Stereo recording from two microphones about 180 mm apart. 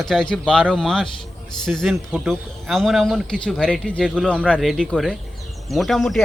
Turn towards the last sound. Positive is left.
turn(degrees=0)  # may be behind; listen again after turning